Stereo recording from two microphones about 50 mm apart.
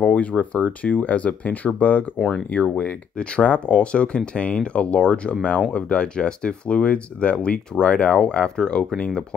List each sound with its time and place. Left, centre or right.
0.0 s speech: left
2.1 s speech: centre
2.5 s speech: left